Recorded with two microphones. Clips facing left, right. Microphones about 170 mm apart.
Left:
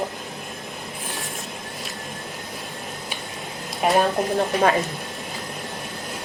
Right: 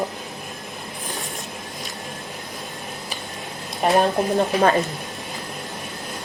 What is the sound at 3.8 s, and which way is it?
Speech, centre (ahead or behind).